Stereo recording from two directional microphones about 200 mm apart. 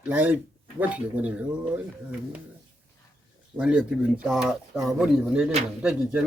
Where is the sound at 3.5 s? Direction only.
5° right (ahead or behind).